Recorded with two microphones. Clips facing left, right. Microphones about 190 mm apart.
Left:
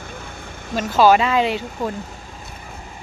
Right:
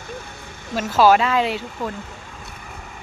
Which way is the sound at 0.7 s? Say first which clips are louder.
Left 1 dB; 5° right (ahead or behind).